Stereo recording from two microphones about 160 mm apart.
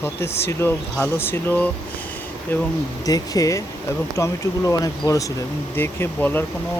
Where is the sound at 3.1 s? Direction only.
20° left (ahead or behind).